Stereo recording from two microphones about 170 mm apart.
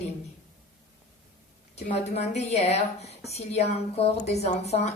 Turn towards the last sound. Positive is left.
turn(degrees=40)  # may be behind; listen again after turning